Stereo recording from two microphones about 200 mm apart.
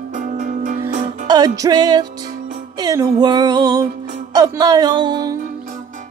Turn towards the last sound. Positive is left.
turn(degrees=-20)  # may be behind; listen again after turning